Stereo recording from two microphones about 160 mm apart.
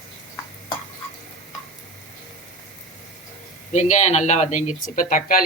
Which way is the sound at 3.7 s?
50° left (ahead or behind).